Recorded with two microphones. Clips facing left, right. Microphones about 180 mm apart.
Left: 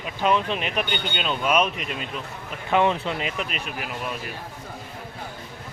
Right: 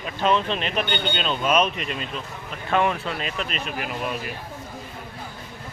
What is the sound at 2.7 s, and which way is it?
Speech, 20° left (ahead or behind).